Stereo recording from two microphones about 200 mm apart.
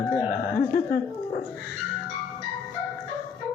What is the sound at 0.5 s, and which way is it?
Speech, 45° left (ahead or behind).